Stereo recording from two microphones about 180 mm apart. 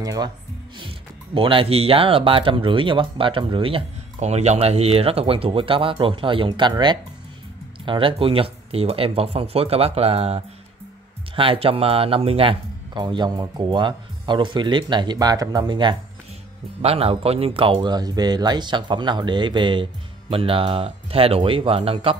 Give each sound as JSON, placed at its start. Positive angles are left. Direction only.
{"t": 0.0, "sound": "speech", "side_deg": -20}
{"t": 0.7, "sound": "speech", "side_deg": -30}